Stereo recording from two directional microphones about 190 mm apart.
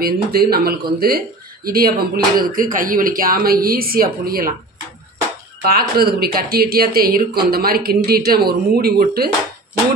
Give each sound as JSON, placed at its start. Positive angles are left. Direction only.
{"t": 0.0, "sound": "speech", "side_deg": -55}
{"t": 5.7, "sound": "speech", "side_deg": -55}